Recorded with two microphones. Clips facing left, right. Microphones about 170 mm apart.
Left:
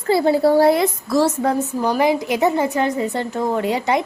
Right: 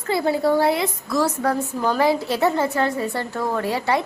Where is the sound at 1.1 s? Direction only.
25° left (ahead or behind).